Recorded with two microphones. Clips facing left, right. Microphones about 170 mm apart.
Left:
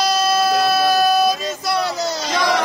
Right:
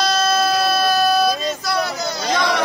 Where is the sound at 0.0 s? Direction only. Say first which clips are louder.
Left 1 dB; 10° left (ahead or behind).